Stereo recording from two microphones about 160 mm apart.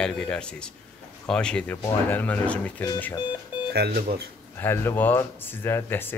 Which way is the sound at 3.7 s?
75° right (ahead or behind).